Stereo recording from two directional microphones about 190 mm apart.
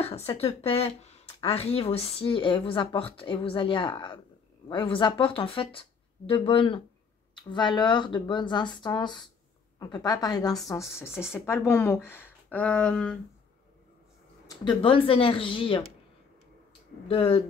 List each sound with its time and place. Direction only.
0.0 s speech: 30° left (ahead or behind); by 13.2 s 5° left (ahead or behind)
14.5 s speech: 25° left (ahead or behind)
17.1 s speech: 30° left (ahead or behind)